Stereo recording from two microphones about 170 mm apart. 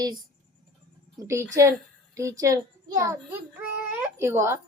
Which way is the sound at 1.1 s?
15° right (ahead or behind).